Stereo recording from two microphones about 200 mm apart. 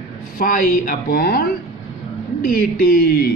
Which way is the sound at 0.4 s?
45° left (ahead or behind).